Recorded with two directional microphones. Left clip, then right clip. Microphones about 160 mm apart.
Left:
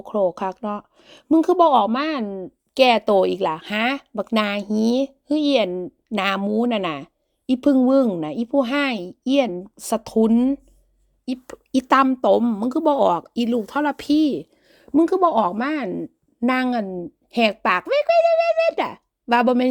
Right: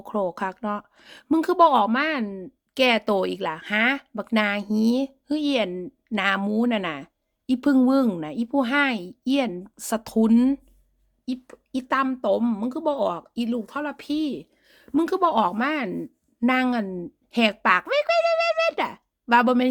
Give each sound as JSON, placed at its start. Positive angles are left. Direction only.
{"t": 0.0, "sound": "a woman's voice", "side_deg": 10}
{"t": 11.4, "sound": "a woman's voice", "side_deg": 45}
{"t": 12.0, "sound": "speech", "side_deg": 35}
{"t": 14.9, "sound": "a woman's voice", "side_deg": 15}